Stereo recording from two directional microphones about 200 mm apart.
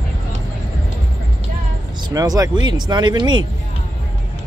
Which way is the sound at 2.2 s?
15° right (ahead or behind).